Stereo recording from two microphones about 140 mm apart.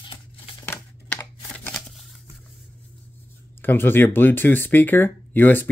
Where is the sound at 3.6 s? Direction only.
15° left (ahead or behind).